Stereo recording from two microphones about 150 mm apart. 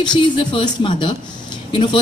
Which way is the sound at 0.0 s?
30° left (ahead or behind).